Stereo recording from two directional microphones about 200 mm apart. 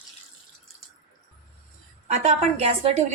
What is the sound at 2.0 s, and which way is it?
Speech, 35° right (ahead or behind).